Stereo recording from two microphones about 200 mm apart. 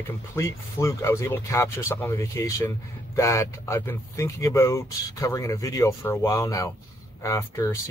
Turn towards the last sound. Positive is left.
turn(degrees=15)  # may be behind; listen again after turning